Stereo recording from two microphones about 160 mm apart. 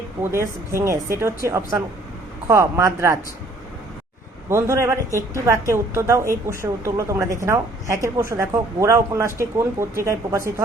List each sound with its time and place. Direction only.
0.2 s a woman's voice: 15° right (ahead or behind)
4.4 s a woman's voice: 15° right (ahead or behind)